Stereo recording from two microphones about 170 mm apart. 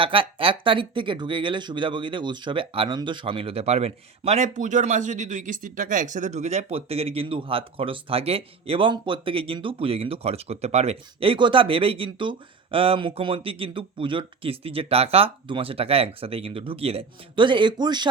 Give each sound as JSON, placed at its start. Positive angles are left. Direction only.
{"t": 0.0, "sound": "speech", "side_deg": -30}